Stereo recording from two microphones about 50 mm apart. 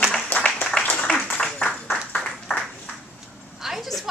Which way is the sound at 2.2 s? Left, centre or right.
Centre.